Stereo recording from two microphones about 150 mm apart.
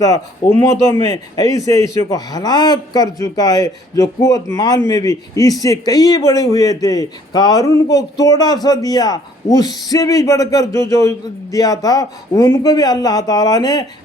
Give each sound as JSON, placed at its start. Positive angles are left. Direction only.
{"t": 0.0, "sound": "a man's voice", "side_deg": 20}